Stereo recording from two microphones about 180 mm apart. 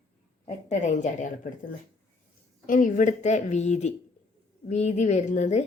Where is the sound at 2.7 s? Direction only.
45° left (ahead or behind).